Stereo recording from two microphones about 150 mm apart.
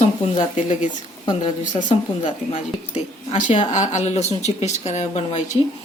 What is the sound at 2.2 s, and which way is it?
Speech, 50° left (ahead or behind).